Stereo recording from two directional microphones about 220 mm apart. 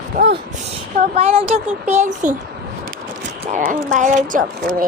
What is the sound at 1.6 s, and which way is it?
Speech, 30° right (ahead or behind).